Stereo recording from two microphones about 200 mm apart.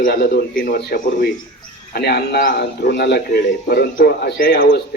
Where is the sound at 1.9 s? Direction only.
50° left (ahead or behind).